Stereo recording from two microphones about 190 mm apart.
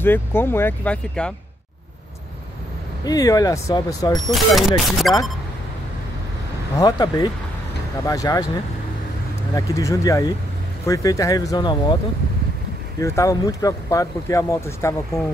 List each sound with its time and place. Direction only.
0.0 s speech: 10° left (ahead or behind)
3.1 s speech: 20° left (ahead or behind)
4.3 s speech: centre (ahead or behind)
6.8 s speech: 20° left (ahead or behind)
9.6 s speech: 15° left (ahead or behind)
13.0 s speech: 15° left (ahead or behind)